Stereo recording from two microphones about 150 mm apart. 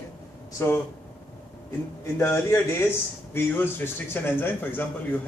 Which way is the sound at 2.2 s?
15° left (ahead or behind).